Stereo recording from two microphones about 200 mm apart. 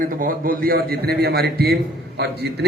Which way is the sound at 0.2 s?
45° right (ahead or behind).